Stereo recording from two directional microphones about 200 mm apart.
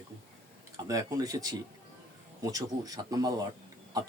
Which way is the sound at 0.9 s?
15° right (ahead or behind).